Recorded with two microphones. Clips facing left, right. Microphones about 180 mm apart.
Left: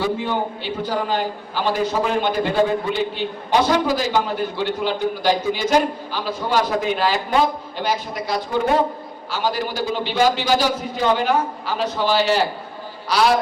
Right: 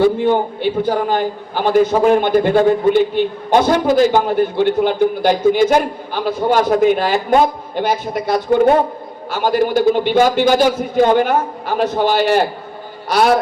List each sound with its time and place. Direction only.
0.0 s a man's voice: 50° right (ahead or behind)